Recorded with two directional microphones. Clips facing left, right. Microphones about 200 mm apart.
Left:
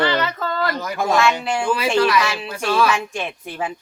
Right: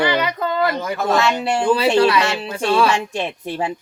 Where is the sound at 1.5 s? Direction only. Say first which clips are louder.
Right 4 dB; 35° right (ahead or behind).